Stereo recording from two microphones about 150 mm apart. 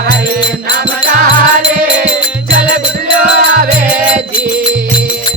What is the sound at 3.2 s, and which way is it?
Music, 65° right (ahead or behind).